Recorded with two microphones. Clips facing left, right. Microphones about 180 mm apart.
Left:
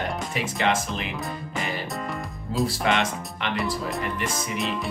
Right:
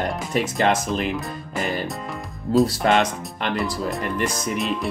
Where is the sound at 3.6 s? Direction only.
Centre (ahead or behind).